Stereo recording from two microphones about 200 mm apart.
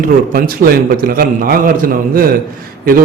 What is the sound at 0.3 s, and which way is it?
A man's voice, 45° right (ahead or behind).